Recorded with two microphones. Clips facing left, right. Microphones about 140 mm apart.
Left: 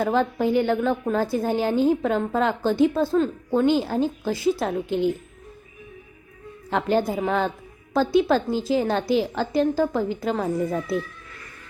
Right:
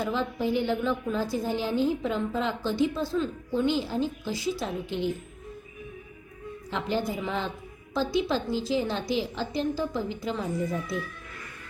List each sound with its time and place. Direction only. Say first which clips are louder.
0.0 s a woman's voice: left 7 dB; 50° left (ahead or behind)
6.7 s a woman's voice: left 7 dB; 55° left (ahead or behind)